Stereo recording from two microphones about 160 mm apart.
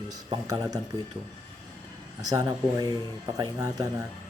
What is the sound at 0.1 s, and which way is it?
Speech, 25° right (ahead or behind).